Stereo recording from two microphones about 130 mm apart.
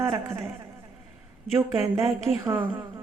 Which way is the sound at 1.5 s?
20° right (ahead or behind).